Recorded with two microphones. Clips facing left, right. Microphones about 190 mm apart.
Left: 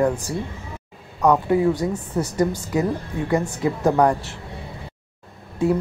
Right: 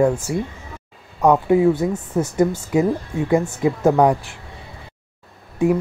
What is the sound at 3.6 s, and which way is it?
Speech, 10° right (ahead or behind).